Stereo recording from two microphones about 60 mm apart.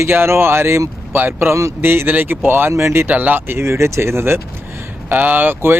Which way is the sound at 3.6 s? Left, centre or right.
Right.